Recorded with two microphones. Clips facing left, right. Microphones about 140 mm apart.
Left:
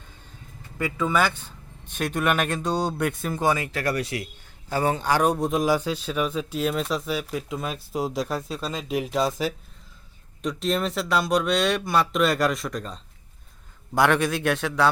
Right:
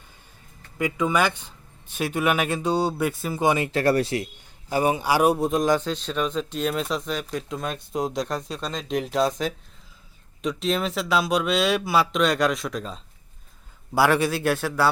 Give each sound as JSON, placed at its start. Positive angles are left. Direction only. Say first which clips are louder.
{"t": 0.8, "sound": "speech", "louder": "right 1 dB", "side_deg": -15}
{"t": 3.4, "sound": "speech", "louder": "right 4 dB", "side_deg": -25}
{"t": 4.7, "sound": "a man's voice", "louder": "right 1 dB", "side_deg": -15}